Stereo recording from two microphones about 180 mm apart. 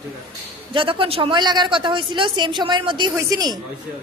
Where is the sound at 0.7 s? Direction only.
30° right (ahead or behind).